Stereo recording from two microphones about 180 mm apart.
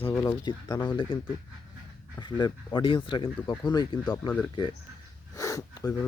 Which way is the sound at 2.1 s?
25° left (ahead or behind).